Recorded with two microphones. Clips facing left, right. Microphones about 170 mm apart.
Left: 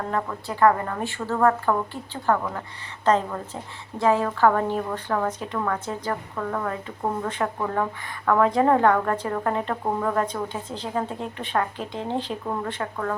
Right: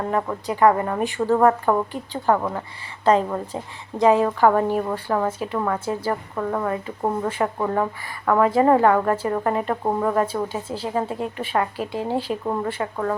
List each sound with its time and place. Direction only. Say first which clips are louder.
0.1 s a woman's voice: right 4 dB; 20° right (ahead or behind)